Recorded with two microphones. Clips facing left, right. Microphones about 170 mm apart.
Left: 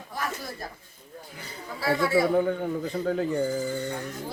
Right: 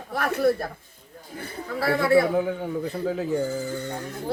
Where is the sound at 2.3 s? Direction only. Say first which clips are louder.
Left 1 dB; 5° right (ahead or behind).